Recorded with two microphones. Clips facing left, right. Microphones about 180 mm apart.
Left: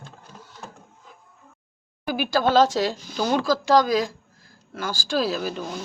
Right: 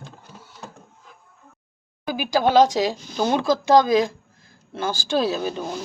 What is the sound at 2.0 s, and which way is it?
A woman's voice, 15° right (ahead or behind).